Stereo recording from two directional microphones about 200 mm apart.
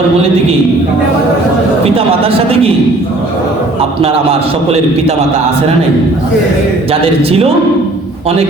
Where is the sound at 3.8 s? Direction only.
30° right (ahead or behind).